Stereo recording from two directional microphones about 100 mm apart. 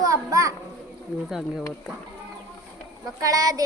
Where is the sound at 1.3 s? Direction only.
Centre (ahead or behind).